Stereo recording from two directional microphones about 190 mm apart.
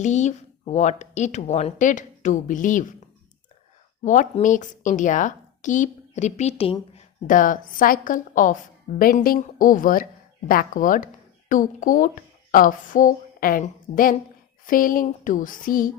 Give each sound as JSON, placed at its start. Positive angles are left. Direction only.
{"t": 0.0, "sound": "a woman's voice", "side_deg": 40}
{"t": 4.0, "sound": "a woman's voice", "side_deg": 40}
{"t": 6.9, "sound": "a woman's voice", "side_deg": 45}
{"t": 9.0, "sound": "a sound", "side_deg": 45}
{"t": 10.5, "sound": "speech", "side_deg": 45}
{"t": 14.7, "sound": "a sound", "side_deg": 45}